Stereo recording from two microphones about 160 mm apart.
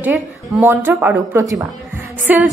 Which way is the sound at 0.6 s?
15° right (ahead or behind).